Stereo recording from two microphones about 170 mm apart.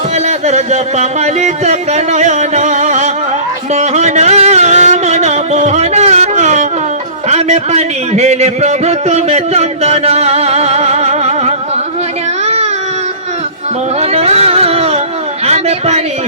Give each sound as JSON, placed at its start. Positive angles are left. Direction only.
{"t": 0.3, "sound": "music", "side_deg": -40}
{"t": 7.3, "sound": "a man's voice", "side_deg": -40}
{"t": 14.0, "sound": "a sound", "side_deg": -40}